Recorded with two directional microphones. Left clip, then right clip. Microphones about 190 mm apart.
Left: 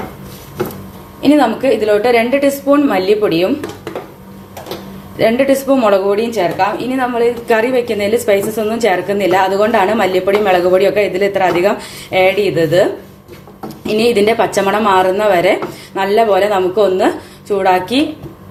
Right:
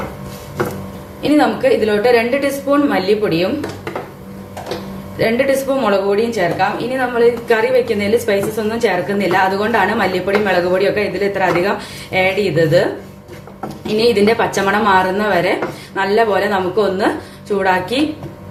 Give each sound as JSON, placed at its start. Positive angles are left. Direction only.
{"t": 1.2, "sound": "a woman's voice", "side_deg": 40}
{"t": 5.1, "sound": "a woman's voice", "side_deg": 35}
{"t": 13.8, "sound": "a woman's voice", "side_deg": 40}